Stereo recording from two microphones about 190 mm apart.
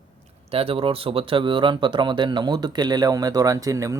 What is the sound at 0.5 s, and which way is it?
Speech, 30° right (ahead or behind).